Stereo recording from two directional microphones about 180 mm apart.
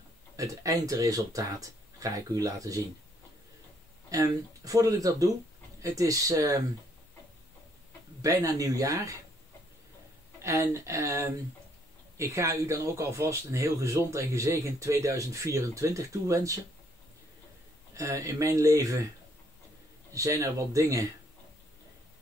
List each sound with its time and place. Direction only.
0.4 s speech: 20° right (ahead or behind)
4.1 s speech: 20° right (ahead or behind)
8.2 s speech: 20° right (ahead or behind)
10.4 s speech: 15° right (ahead or behind)
17.9 s speech: 15° right (ahead or behind)
20.2 s speech: 15° right (ahead or behind)